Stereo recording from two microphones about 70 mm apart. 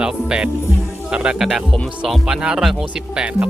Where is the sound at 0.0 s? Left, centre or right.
Centre.